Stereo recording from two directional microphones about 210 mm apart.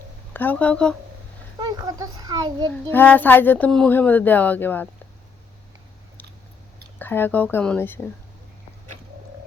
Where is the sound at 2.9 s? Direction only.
10° left (ahead or behind).